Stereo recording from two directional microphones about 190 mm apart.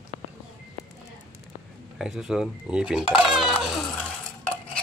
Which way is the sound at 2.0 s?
Centre (ahead or behind).